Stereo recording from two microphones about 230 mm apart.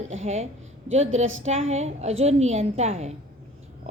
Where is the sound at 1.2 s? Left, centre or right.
Right.